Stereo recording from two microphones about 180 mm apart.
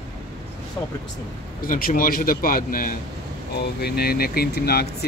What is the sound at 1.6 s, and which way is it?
A man's voice, 50° left (ahead or behind).